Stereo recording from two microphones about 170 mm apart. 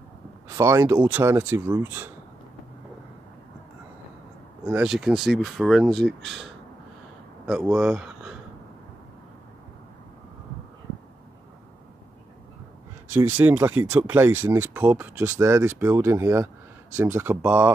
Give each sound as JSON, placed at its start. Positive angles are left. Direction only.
{"t": 0.6, "sound": "speech", "side_deg": -15}
{"t": 4.6, "sound": "speech", "side_deg": -5}
{"t": 13.1, "sound": "speech", "side_deg": -10}